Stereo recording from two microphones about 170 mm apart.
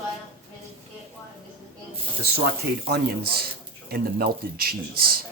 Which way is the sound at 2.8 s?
65° right (ahead or behind).